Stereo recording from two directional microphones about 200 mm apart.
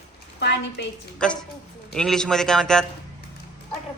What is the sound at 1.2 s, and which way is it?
A man's voice, 5° left (ahead or behind).